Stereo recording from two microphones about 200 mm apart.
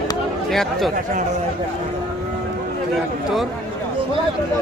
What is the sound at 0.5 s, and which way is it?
Speech, centre (ahead or behind).